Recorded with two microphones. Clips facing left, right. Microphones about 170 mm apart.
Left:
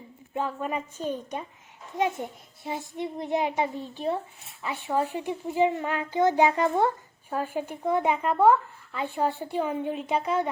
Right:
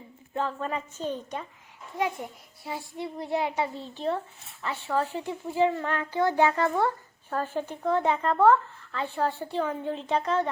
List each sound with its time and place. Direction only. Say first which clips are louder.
0.3 s a child's voice: left 1 dB; 10° left (ahead or behind)